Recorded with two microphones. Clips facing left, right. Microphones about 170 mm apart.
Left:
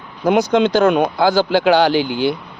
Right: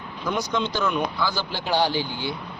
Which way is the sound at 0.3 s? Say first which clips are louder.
Left 12 dB; 75° left (ahead or behind).